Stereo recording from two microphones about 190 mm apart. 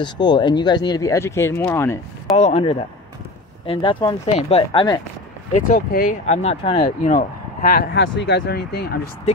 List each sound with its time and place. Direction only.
0.0 s speech: 25° left (ahead or behind)
2.3 s speech: 35° left (ahead or behind)
5.5 s speech: 45° left (ahead or behind); by 6.9 s 30° left (ahead or behind)
7.1 s speech: 45° left (ahead or behind)
8.0 s speech: 70° left (ahead or behind); by 9.1 s 55° left (ahead or behind)